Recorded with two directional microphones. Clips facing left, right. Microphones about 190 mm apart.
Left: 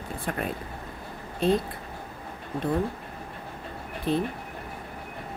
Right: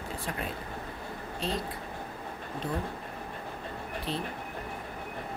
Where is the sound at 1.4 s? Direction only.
55° left (ahead or behind).